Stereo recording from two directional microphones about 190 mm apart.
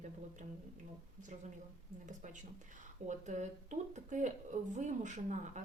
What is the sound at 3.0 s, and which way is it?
Speech, 40° right (ahead or behind).